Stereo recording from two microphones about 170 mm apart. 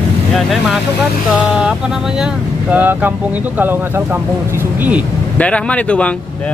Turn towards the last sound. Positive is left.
turn(degrees=5)  # may be behind; listen again after turning